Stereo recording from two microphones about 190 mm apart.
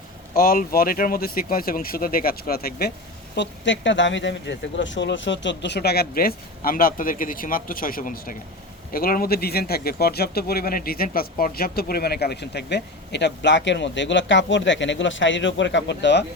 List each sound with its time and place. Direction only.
0.3 s speech: 50° left (ahead or behind)
3.3 s speech: 70° left (ahead or behind)